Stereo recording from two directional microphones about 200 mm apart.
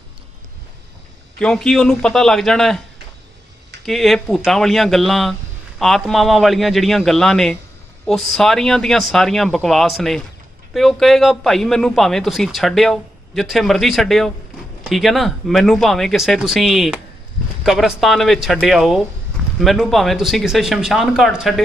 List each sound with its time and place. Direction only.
1.4 s a man's voice: 5° left (ahead or behind)
3.8 s a man's voice: centre (ahead or behind)